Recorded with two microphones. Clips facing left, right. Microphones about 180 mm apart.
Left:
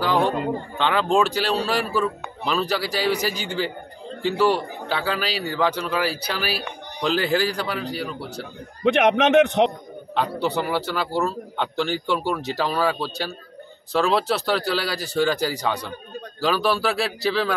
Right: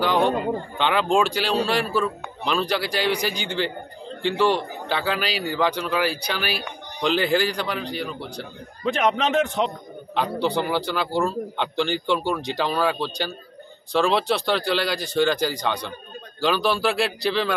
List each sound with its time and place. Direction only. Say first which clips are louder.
0.0 s a man's voice: right 1 dB; centre (ahead or behind)
8.8 s a man's voice: left 4 dB; 70° left (ahead or behind)
10.1 s a man's voice: even; centre (ahead or behind)